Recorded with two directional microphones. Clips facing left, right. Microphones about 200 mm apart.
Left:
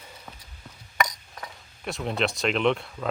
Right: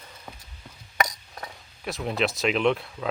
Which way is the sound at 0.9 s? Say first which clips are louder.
Right 1 dB; 35° right (ahead or behind).